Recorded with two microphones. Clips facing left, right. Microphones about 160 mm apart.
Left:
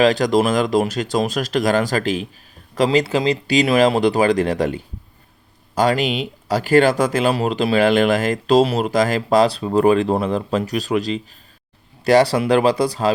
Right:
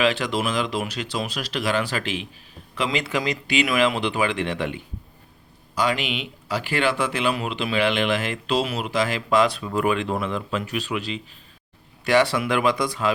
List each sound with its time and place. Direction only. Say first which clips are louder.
0.0 s speech: left 7 dB; 40° left (ahead or behind)